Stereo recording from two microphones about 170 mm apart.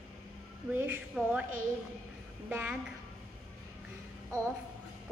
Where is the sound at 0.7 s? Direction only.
10° right (ahead or behind).